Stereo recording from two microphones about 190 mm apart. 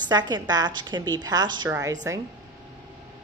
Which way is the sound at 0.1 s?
20° right (ahead or behind).